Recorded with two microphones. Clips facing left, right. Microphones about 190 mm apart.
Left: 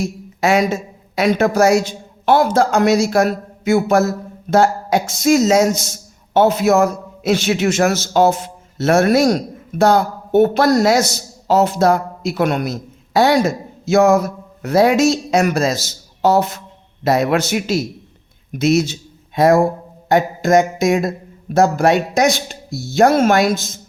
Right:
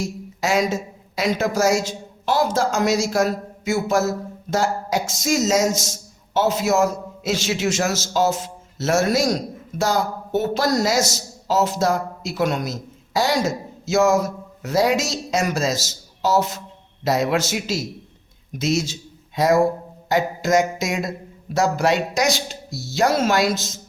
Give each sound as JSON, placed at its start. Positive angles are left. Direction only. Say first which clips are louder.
{"t": 0.0, "sound": "a woman's voice", "louder": "left 6 dB", "side_deg": 60}
{"t": 20.1, "sound": "a sound", "louder": "left 5 dB", "side_deg": 55}
{"t": 21.5, "sound": "speech", "louder": "left 6 dB", "side_deg": 55}